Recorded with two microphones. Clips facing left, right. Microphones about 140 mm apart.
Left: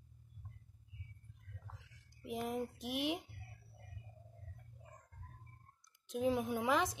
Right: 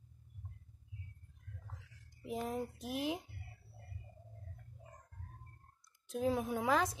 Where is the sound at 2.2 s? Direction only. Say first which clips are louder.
Even; 30° right (ahead or behind).